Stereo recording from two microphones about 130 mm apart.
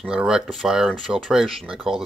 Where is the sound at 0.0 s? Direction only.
5° right (ahead or behind).